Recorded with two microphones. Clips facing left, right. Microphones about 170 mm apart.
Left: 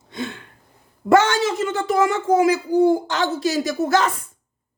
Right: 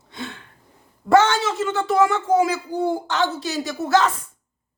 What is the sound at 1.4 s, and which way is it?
A woman's voice, 15° left (ahead or behind).